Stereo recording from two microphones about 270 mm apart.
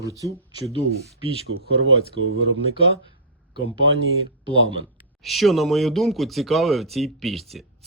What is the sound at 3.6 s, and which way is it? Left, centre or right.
Speech, right.